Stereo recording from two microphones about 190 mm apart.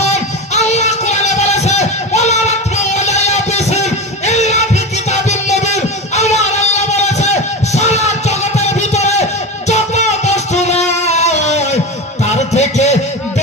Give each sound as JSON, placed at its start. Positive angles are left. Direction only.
{"t": 0.0, "sound": "music", "side_deg": 35}